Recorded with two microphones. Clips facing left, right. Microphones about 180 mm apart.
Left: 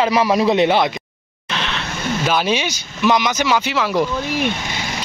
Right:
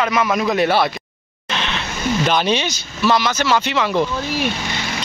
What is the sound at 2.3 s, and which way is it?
Speech, 5° left (ahead or behind).